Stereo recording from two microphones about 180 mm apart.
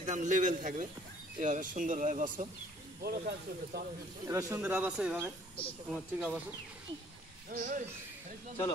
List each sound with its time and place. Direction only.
0.0 s speech: 45° right (ahead or behind)
3.0 s speech: 60° right (ahead or behind)
4.3 s speech: 15° right (ahead or behind)
7.5 s speech: 45° right (ahead or behind)